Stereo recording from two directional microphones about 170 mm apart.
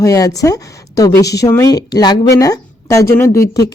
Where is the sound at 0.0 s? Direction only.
20° left (ahead or behind).